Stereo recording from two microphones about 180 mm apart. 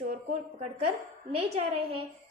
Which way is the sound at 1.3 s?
35° right (ahead or behind).